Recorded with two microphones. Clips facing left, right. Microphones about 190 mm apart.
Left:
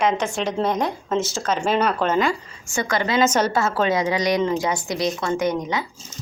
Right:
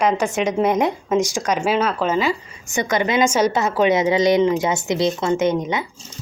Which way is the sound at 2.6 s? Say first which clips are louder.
Right 3 dB; 20° right (ahead or behind).